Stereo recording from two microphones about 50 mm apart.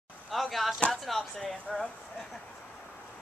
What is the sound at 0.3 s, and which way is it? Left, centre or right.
Speech, centre.